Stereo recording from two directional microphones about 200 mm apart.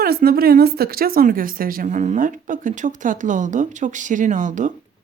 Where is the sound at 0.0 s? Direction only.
50° right (ahead or behind).